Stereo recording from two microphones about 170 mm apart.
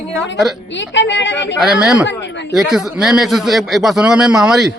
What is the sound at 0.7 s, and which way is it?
Speech, 90° left.